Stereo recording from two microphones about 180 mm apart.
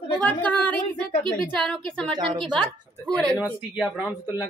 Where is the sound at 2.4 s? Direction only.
5° left (ahead or behind).